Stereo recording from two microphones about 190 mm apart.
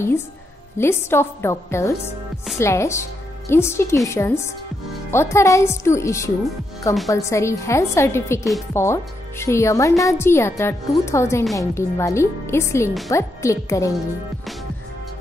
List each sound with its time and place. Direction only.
0.7 s speech: 15° left (ahead or behind)